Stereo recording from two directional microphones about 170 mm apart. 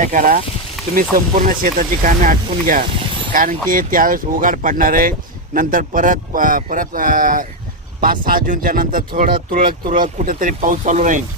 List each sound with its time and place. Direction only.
0.0 s speech: 50° right (ahead or behind)
0.8 s a sound: centre (ahead or behind)
1.1 s speech: 55° right (ahead or behind)